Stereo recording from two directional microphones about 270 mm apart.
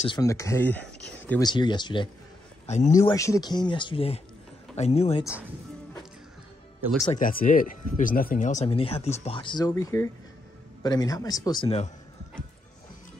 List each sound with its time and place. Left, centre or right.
0.0 s speech: centre
2.9 s speech: centre
7.1 s speech: left